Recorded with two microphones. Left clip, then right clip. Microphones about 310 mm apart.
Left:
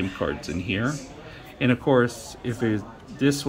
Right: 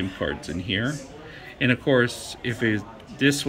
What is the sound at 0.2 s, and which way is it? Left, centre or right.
Speech, centre.